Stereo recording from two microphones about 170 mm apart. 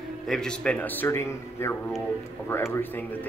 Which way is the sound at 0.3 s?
5° left (ahead or behind).